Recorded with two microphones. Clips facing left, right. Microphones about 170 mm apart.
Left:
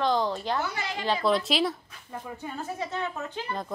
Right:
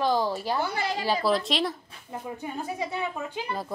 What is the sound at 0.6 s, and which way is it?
Speech, 30° right (ahead or behind).